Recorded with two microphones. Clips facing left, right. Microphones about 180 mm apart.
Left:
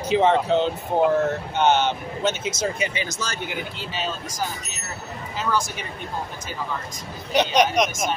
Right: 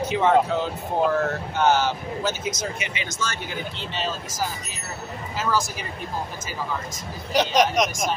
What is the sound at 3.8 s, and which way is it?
Speech, centre (ahead or behind).